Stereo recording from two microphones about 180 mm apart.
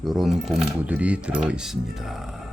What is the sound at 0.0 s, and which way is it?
Speech, centre (ahead or behind).